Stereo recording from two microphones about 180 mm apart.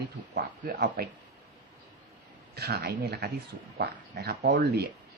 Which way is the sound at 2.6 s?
65° right (ahead or behind).